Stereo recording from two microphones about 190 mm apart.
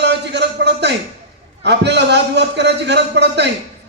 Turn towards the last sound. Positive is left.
turn(degrees=-65)  # may be behind; listen again after turning